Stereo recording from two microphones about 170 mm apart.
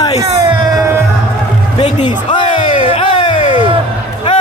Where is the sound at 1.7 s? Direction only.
30° left (ahead or behind).